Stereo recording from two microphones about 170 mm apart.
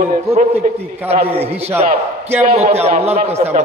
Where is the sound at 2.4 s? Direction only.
40° right (ahead or behind).